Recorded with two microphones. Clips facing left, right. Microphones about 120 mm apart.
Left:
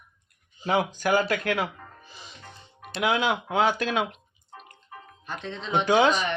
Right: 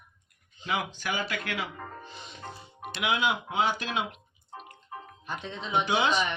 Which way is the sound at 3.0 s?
45° left (ahead or behind).